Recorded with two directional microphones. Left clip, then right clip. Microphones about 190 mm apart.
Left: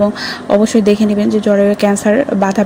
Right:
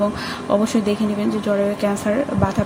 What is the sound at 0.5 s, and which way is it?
Speech, 30° left (ahead or behind).